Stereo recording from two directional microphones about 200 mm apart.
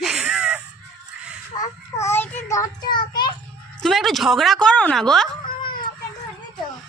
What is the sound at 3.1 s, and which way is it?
Children playing, 20° left (ahead or behind).